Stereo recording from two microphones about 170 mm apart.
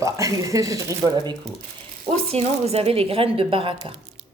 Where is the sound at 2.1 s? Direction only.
35° right (ahead or behind).